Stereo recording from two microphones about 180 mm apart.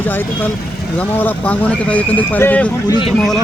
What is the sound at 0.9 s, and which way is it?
Speech, 10° left (ahead or behind).